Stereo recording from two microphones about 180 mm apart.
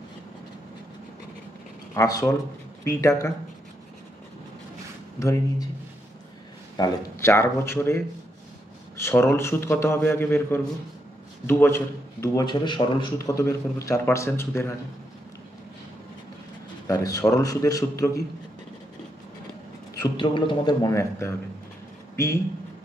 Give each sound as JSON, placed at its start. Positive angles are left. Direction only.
{"t": 2.0, "sound": "a man's voice", "side_deg": 20}
{"t": 5.2, "sound": "a man's voice", "side_deg": 15}
{"t": 6.8, "sound": "a man's voice", "side_deg": 15}
{"t": 16.8, "sound": "a man's voice", "side_deg": 20}
{"t": 20.0, "sound": "a man's voice", "side_deg": 25}